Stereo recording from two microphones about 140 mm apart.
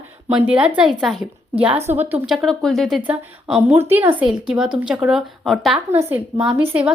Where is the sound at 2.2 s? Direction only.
Centre (ahead or behind).